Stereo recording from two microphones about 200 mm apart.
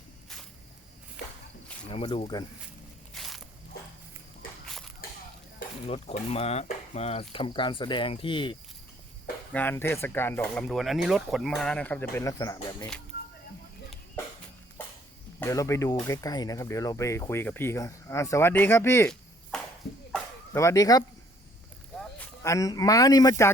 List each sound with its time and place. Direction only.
1.9 s speech: 25° left (ahead or behind)
3.2 s a sound: centre (ahead or behind)
4.6 s a sound: 5° left (ahead or behind)
5.9 s speech: 30° left (ahead or behind)
9.5 s speech: 10° left (ahead or behind)
15.4 s speech: 15° left (ahead or behind)